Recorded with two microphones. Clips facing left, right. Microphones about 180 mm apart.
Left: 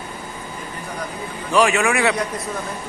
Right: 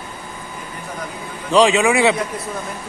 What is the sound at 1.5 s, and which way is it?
Speech, 15° right (ahead or behind).